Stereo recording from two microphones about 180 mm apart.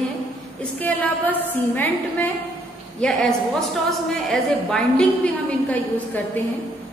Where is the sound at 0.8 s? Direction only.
10° left (ahead or behind).